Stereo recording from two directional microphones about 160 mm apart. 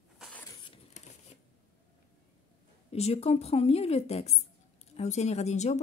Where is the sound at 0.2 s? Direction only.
10° left (ahead or behind).